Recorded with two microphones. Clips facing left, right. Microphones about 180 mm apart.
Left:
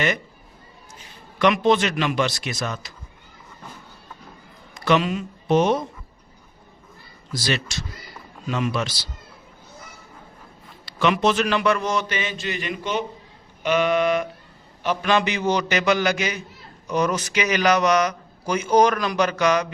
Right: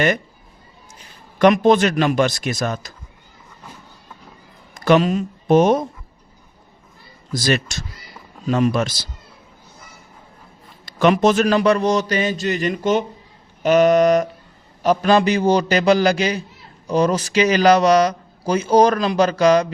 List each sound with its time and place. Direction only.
1.4 s a man's voice: 45° right (ahead or behind)
4.7 s speech: 45° right (ahead or behind)
7.3 s a man's voice: 45° right (ahead or behind)
10.8 s a man's voice: 45° right (ahead or behind)